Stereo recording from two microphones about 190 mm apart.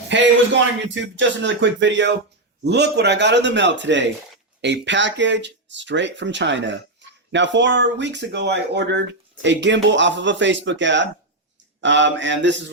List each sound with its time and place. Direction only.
0.1 s speech: 70° right (ahead or behind)